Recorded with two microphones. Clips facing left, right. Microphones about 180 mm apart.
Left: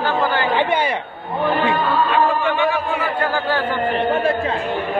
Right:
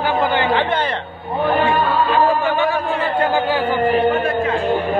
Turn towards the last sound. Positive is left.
turn(degrees=-10)  # may be behind; listen again after turning